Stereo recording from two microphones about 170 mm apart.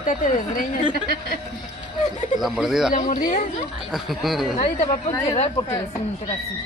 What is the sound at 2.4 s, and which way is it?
Speech, centre (ahead or behind).